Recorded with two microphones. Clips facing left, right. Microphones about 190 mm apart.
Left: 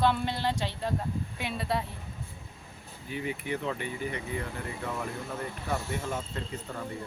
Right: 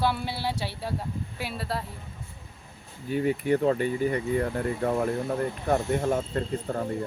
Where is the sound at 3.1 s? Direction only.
45° right (ahead or behind).